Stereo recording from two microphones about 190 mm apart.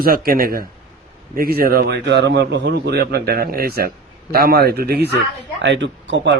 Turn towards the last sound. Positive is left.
turn(degrees=-70)  # may be behind; listen again after turning